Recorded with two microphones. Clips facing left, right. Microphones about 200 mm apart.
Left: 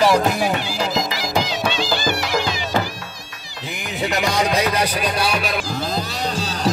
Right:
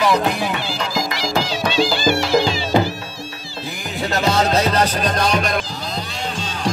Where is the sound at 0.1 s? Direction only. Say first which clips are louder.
Left 1 dB; 45° left (ahead or behind).